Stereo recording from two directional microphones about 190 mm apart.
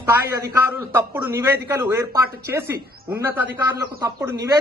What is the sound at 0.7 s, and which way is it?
A man's voice, 10° right (ahead or behind).